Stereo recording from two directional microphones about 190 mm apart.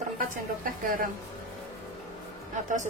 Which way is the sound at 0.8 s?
45° right (ahead or behind).